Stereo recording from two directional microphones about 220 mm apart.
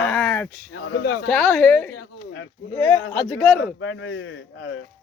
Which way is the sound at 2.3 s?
60° left (ahead or behind).